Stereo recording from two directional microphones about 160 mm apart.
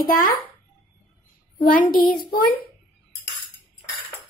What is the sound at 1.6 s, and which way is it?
Speech, 60° left (ahead or behind).